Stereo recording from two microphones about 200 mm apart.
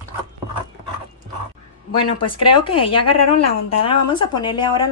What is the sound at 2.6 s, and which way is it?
Speech, 25° left (ahead or behind).